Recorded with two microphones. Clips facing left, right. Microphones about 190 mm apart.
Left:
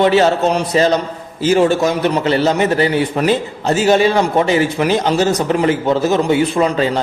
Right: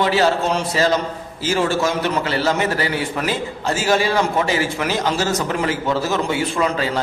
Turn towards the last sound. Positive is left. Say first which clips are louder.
# left 5 dB
turn(degrees=20)  # may be behind; listen again after turning